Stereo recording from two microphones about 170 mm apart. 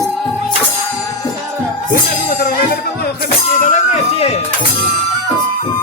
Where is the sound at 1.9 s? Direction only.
60° left (ahead or behind).